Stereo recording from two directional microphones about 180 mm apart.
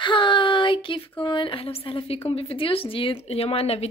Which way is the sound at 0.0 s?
25° left (ahead or behind).